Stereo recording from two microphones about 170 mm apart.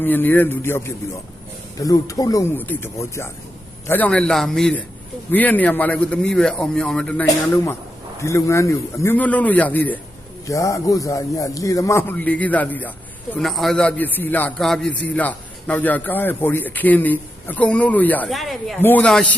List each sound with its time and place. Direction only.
0.0 s a man's voice: 10° left (ahead or behind)